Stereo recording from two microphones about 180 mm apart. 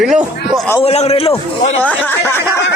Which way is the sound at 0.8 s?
35° left (ahead or behind).